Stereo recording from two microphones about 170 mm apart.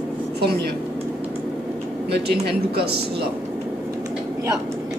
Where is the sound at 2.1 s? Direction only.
70° right (ahead or behind).